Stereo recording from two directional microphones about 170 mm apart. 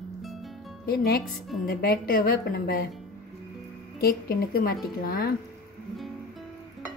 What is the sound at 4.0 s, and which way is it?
A woman's voice, 65° left (ahead or behind).